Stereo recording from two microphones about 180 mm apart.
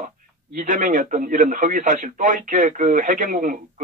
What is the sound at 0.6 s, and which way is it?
A man's voice, 45° right (ahead or behind).